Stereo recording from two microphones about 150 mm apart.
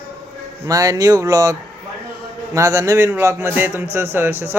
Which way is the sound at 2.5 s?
20° right (ahead or behind).